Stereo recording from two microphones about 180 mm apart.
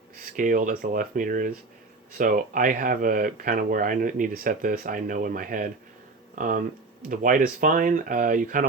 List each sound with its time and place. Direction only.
0.3 s speech: 50° right (ahead or behind)